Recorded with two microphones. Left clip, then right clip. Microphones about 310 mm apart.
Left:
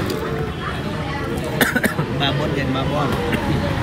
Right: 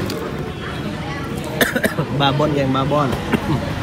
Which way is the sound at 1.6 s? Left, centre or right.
Centre.